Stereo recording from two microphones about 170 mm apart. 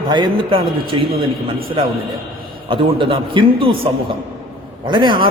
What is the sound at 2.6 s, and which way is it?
A man's voice, 30° right (ahead or behind).